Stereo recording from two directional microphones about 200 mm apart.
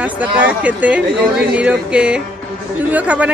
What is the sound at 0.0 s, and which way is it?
Speech, 10° right (ahead or behind).